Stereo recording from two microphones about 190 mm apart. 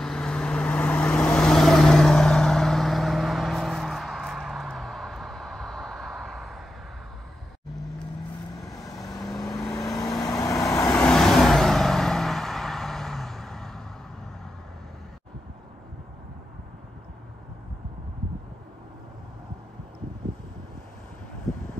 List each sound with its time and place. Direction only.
0.0 s vehicle: 5° left (ahead or behind)
8.6 s vehicle: 20° left (ahead or behind)
10.9 s vehicle: 5° left (ahead or behind)